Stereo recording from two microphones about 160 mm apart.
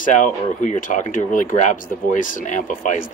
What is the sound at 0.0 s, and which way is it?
Speech, 50° left (ahead or behind).